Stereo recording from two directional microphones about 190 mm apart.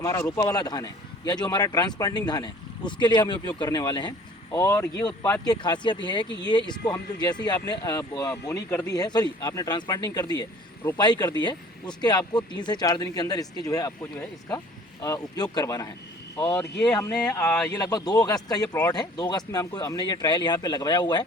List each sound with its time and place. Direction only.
0.0 s a man's voice: 15° left (ahead or behind)
17.7 s a man's voice: 20° left (ahead or behind)